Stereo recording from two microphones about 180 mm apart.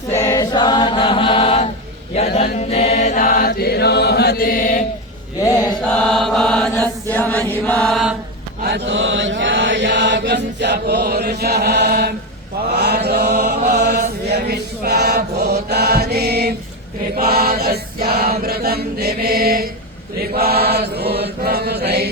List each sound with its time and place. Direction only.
0.3 s chant: 20° left (ahead or behind)
2.6 s chant: 35° left (ahead or behind)
5.4 s mantra: 20° left (ahead or behind)
5.9 s mantra: 5° left (ahead or behind)
8.6 s chant: 80° right
12.7 s mantra: 65° right (ahead or behind)
14.3 s chant: 65° right (ahead or behind)
20.3 s mantra: 60° right (ahead or behind)